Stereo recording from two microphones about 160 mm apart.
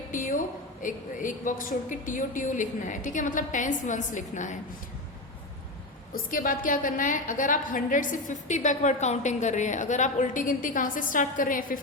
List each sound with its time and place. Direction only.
0.1 s a woman's voice: 55° left (ahead or behind)
6.1 s a woman's voice: 60° left (ahead or behind)